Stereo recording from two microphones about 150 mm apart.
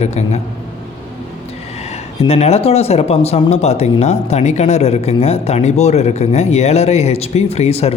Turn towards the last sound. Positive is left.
turn(degrees=45)  # may be behind; listen again after turning